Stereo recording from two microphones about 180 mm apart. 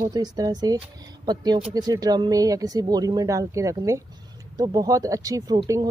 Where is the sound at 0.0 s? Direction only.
20° right (ahead or behind).